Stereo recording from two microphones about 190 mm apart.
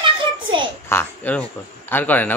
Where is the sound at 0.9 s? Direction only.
10° left (ahead or behind).